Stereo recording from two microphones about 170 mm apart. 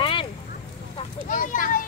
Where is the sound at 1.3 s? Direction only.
50° left (ahead or behind).